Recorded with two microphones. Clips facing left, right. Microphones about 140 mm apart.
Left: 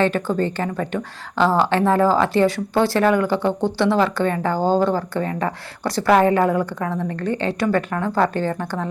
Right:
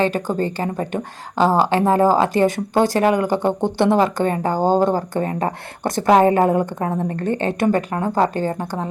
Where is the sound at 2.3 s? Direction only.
50° right (ahead or behind).